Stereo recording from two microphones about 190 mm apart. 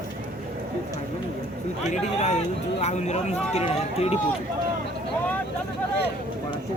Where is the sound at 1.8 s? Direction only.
40° left (ahead or behind).